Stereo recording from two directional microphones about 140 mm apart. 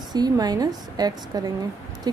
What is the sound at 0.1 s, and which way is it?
A woman's voice, 30° right (ahead or behind).